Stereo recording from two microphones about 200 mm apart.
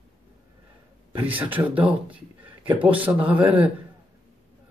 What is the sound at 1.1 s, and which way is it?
Speech, 10° right (ahead or behind).